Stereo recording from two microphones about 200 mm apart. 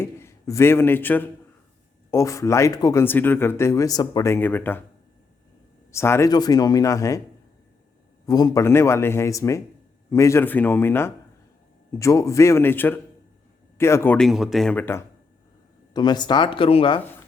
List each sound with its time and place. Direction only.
0.0 s a man's voice: 15° left (ahead or behind)
5.9 s speech: 15° left (ahead or behind)
8.3 s speech: 20° left (ahead or behind)
15.9 s speech: 20° left (ahead or behind)